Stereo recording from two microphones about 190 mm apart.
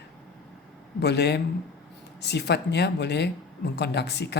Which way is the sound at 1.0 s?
60° left (ahead or behind).